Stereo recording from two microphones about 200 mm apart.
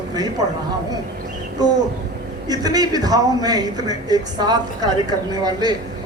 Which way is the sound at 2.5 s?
20° right (ahead or behind).